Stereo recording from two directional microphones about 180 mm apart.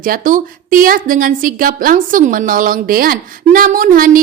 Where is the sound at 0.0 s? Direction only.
50° right (ahead or behind).